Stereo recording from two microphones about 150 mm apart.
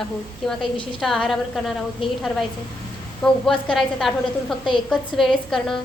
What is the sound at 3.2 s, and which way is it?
A woman's voice, 5° left (ahead or behind).